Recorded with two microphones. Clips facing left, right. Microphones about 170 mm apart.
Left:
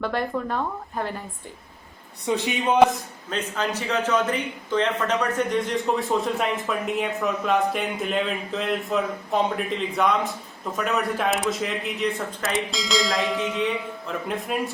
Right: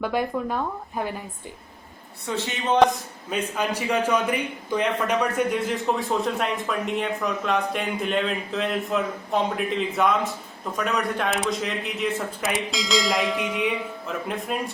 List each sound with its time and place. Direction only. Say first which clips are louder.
0.0 s a woman's voice: right 1 dB; 10° right (ahead or behind)
2.2 s a man's voice: left 3 dB; 15° left (ahead or behind)
3.2 s a man's voice: right 1 dB; 10° right (ahead or behind)
13.5 s a man's voice: even; 10° right (ahead or behind)